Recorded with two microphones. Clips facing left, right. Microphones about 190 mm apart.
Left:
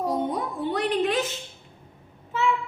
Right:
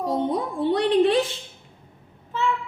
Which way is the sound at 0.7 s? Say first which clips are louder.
Right 6 dB; 35° right (ahead or behind).